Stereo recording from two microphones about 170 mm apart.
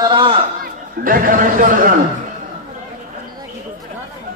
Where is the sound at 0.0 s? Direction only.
30° right (ahead or behind).